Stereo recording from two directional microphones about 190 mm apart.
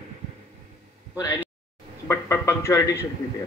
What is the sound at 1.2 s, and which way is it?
Speech, 15° left (ahead or behind).